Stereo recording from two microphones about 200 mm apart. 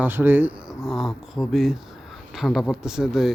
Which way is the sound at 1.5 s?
Centre (ahead or behind).